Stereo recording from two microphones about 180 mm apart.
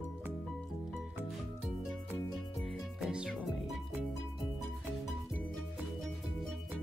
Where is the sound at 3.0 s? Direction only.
5° right (ahead or behind).